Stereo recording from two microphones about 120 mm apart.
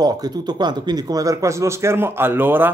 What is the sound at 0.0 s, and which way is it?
A man's voice, 35° right (ahead or behind).